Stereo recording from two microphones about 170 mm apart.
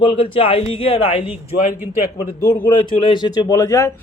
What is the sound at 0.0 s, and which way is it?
Speech, 35° left (ahead or behind).